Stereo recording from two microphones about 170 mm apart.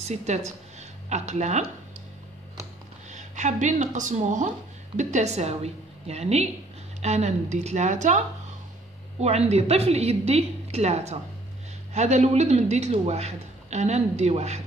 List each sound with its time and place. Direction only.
0.0 s a woman's voice: 40° right (ahead or behind)
3.1 s a man's voice: 45° right (ahead or behind)
9.2 s a man's voice: 40° right (ahead or behind)